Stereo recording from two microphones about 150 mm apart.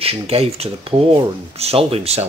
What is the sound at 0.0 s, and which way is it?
Speech, 40° right (ahead or behind).